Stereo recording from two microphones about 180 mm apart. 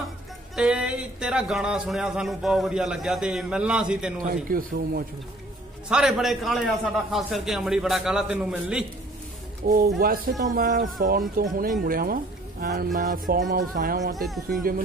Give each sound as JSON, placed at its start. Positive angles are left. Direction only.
{"t": 0.6, "sound": "speech", "side_deg": -5}
{"t": 4.3, "sound": "speech", "side_deg": -50}
{"t": 5.9, "sound": "speech", "side_deg": -5}
{"t": 9.6, "sound": "speech", "side_deg": -50}
{"t": 14.1, "sound": "speech", "side_deg": 0}